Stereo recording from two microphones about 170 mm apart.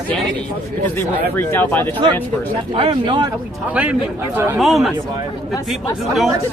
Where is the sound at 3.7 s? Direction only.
10° right (ahead or behind).